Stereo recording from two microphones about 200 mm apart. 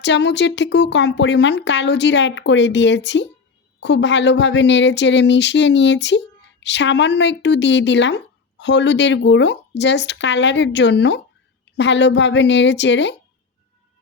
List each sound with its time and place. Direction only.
0.0 s speech: 60° left (ahead or behind)